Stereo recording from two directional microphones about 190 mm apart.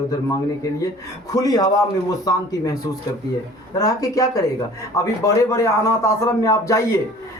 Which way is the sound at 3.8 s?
20° left (ahead or behind).